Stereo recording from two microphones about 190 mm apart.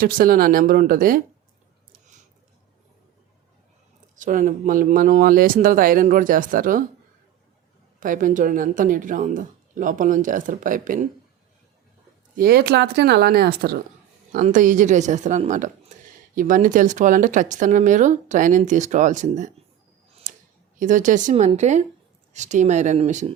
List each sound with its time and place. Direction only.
0.0 s speech: 50° right (ahead or behind)
1.9 s a sound: 40° right (ahead or behind)
4.1 s speech: 45° right (ahead or behind)
7.9 s speech: 45° right (ahead or behind)
12.4 s speech: 55° right (ahead or behind)
14.3 s speech: 45° right (ahead or behind)
20.3 s a sound: 40° right (ahead or behind)
20.7 s speech: 40° right (ahead or behind)